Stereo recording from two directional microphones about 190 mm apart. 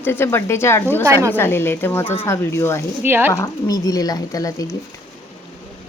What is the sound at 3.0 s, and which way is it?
Speech, 10° right (ahead or behind).